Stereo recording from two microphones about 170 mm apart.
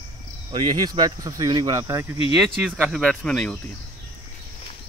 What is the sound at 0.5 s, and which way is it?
Speech, 25° right (ahead or behind).